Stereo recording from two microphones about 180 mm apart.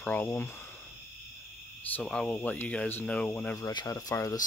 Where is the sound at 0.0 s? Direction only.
10° left (ahead or behind).